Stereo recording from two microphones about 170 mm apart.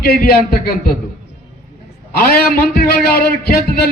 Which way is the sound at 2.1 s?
65° left (ahead or behind).